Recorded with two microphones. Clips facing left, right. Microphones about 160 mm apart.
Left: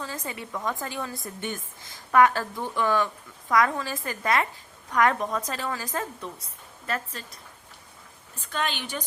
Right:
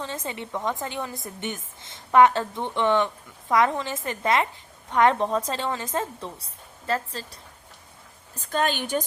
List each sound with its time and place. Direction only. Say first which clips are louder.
0.0 s a woman's voice: right 3 dB; 25° right (ahead or behind)
8.4 s a woman's voice: right 5 dB; 45° right (ahead or behind)